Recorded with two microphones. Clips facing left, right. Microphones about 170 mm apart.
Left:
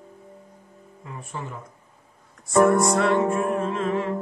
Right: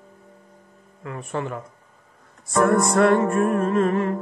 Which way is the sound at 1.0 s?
70° right (ahead or behind).